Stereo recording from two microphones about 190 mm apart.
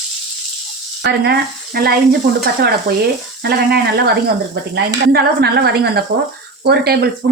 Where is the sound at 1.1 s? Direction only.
55° right (ahead or behind).